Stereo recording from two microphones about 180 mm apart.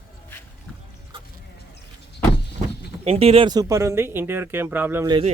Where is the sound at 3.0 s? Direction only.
35° right (ahead or behind); by 5.1 s 10° right (ahead or behind).